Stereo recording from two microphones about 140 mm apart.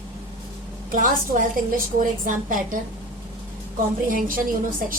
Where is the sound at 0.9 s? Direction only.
75° right (ahead or behind).